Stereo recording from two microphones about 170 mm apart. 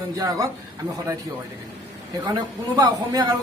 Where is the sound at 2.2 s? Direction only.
20° right (ahead or behind).